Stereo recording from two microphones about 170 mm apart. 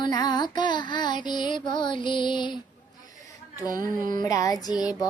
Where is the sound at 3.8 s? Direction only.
25° left (ahead or behind).